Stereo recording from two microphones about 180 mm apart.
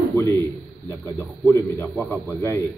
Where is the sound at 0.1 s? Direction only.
15° left (ahead or behind).